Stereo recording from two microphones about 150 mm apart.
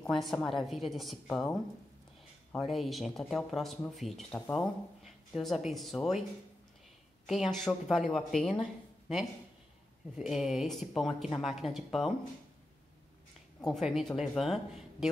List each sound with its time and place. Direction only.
0.0 s speech: centre (ahead or behind)
2.5 s speech: centre (ahead or behind)
7.2 s speech: centre (ahead or behind)
10.1 s speech: centre (ahead or behind)
13.6 s speech: centre (ahead or behind)